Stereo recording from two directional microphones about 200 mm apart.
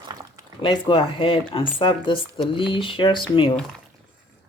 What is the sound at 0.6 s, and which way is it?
Speech, 25° left (ahead or behind).